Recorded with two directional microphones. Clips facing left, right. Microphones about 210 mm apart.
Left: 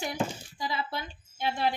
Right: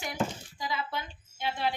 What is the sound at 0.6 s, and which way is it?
Speech, 35° left (ahead or behind).